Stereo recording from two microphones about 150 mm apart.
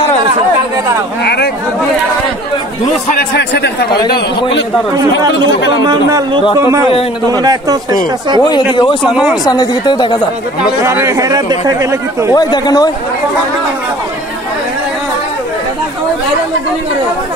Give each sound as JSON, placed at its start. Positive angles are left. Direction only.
{"t": 1.2, "sound": "speech", "side_deg": 90}
{"t": 3.3, "sound": "a man's voice", "side_deg": 90}
{"t": 4.9, "sound": "speech", "side_deg": -25}
{"t": 8.4, "sound": "speech", "side_deg": 30}
{"t": 9.1, "sound": "speech", "side_deg": -5}
{"t": 9.4, "sound": "speech", "side_deg": 25}
{"t": 10.8, "sound": "speech", "side_deg": -20}
{"t": 12.4, "sound": "speech", "side_deg": 25}